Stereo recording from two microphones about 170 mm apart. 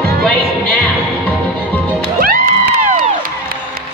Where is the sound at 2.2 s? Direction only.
55° right (ahead or behind).